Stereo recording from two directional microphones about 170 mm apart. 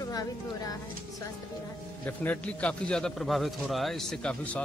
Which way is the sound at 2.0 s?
10° left (ahead or behind).